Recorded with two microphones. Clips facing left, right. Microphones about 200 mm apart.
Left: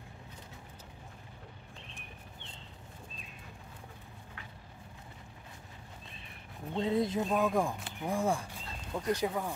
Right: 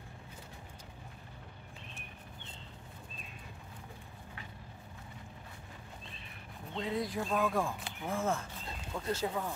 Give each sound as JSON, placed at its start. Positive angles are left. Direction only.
{"t": 6.8, "sound": "speech", "side_deg": 25}